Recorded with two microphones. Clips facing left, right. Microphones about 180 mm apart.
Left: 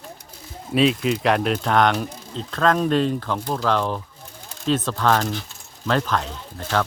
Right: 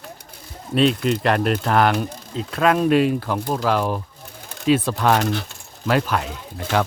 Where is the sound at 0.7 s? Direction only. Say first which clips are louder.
Right 1 dB; centre (ahead or behind).